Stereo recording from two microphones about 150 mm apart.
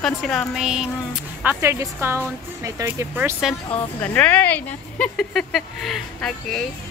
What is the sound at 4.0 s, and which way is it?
Speech, 10° left (ahead or behind).